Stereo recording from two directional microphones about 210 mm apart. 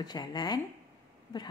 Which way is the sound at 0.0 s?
20° left (ahead or behind).